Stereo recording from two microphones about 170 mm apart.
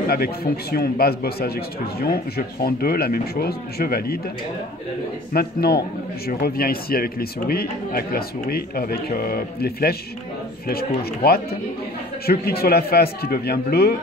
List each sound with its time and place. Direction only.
0.1 s a man's voice: 65° left (ahead or behind)
5.3 s a man's voice: 65° left (ahead or behind)